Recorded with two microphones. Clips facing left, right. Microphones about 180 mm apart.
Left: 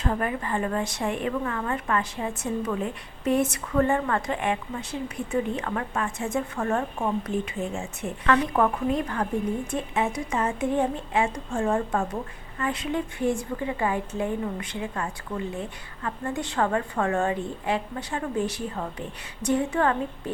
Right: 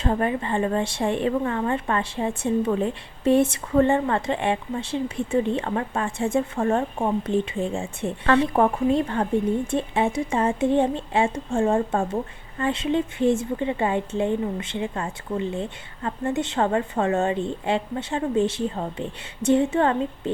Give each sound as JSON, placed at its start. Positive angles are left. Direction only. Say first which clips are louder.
{"t": 0.0, "sound": "speech", "louder": "right 4 dB", "side_deg": -30}